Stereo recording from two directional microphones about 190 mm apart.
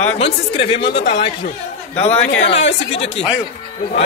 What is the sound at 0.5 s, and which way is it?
Speech, 30° left (ahead or behind).